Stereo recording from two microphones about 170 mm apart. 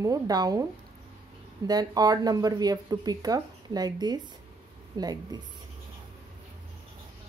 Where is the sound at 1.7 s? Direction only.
25° right (ahead or behind).